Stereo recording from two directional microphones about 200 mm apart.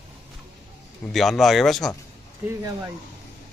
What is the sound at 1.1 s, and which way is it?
Speech, centre (ahead or behind).